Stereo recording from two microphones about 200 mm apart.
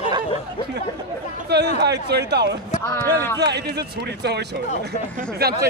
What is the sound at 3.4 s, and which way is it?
A man's voice, 55° right (ahead or behind).